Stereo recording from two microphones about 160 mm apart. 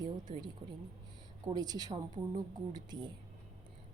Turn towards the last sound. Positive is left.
turn(degrees=-25)  # may be behind; listen again after turning